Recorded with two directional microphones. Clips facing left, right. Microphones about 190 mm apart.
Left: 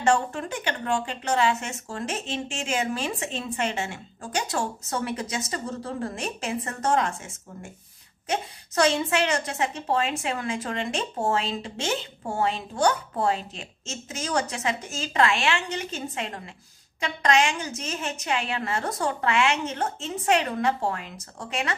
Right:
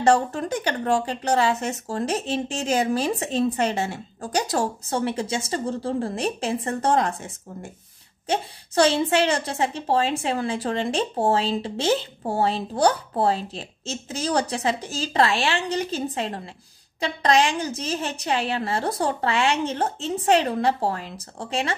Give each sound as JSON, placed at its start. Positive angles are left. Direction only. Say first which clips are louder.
{"t": 0.0, "sound": "a woman's voice", "louder": "right 4 dB", "side_deg": -35}